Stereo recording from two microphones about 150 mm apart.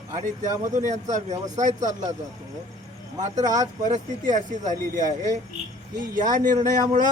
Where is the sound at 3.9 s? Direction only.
55° right (ahead or behind).